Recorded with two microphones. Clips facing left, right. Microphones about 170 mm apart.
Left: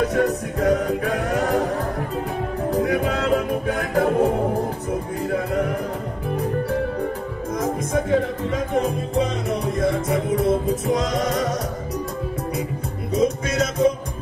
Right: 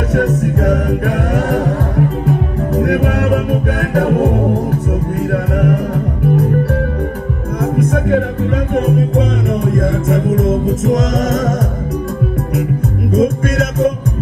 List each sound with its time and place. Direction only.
0.4 s music: 70° right (ahead or behind)
2.8 s music: 70° right (ahead or behind)
7.6 s music: 65° right (ahead or behind)
9.8 s music: 45° right (ahead or behind)
13.1 s music: 55° right (ahead or behind)